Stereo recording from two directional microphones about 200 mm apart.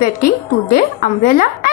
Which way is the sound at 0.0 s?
45° left (ahead or behind).